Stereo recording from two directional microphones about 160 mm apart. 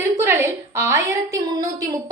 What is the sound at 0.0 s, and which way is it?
A woman's voice, 15° right (ahead or behind).